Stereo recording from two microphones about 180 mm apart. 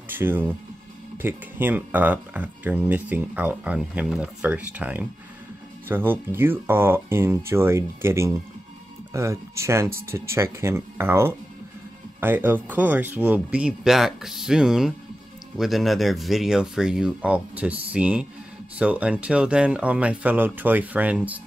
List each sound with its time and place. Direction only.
0.1 s speech: 10° right (ahead or behind)